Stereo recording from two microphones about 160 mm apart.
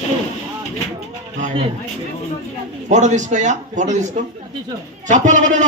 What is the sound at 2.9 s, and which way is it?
Speech, 50° right (ahead or behind).